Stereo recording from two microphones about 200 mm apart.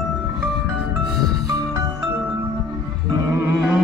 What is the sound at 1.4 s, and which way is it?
Music, 20° right (ahead or behind).